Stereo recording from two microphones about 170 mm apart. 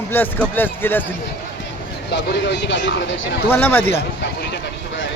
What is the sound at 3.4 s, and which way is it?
Speech, 10° left (ahead or behind).